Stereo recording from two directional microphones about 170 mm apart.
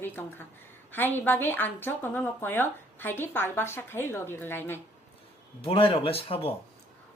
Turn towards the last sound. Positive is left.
turn(degrees=35)  # may be behind; listen again after turning